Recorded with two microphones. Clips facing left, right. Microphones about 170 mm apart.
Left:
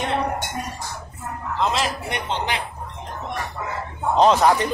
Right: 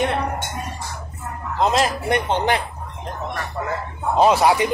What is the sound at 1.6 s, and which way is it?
A man's voice, 45° right (ahead or behind).